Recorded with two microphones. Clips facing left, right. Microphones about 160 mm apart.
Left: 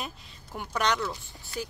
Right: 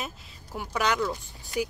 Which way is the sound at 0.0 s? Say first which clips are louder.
Right 1 dB; 5° right (ahead or behind).